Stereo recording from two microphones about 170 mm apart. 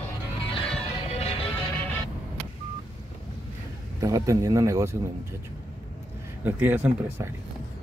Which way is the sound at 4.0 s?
20° right (ahead or behind).